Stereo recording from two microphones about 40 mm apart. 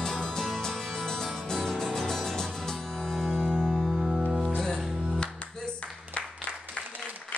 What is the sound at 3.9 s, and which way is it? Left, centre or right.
Music, centre.